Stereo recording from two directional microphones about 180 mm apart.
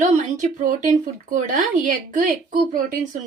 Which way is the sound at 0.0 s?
45° right (ahead or behind).